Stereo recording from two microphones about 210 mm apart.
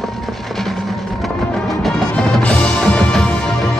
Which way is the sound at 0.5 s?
Centre (ahead or behind).